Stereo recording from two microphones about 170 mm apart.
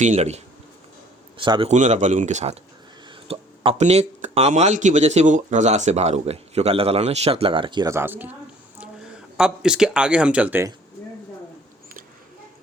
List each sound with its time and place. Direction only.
0.0 s speech: 45° right (ahead or behind)
1.4 s a man's voice: 30° right (ahead or behind)
1.7 s speech: 45° right (ahead or behind); by 10.7 s 10° right (ahead or behind)